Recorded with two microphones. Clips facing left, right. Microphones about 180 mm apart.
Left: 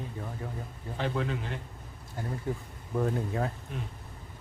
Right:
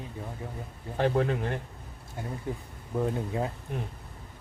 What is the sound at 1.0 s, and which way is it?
Speech, 50° right (ahead or behind).